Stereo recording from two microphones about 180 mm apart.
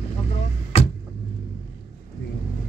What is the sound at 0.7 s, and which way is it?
Vehicle, 35° left (ahead or behind).